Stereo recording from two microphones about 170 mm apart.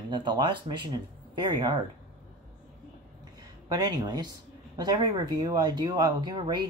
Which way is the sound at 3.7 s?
25° right (ahead or behind).